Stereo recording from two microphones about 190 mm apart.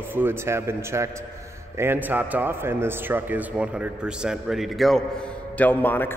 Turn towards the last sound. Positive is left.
turn(degrees=10)  # may be behind; listen again after turning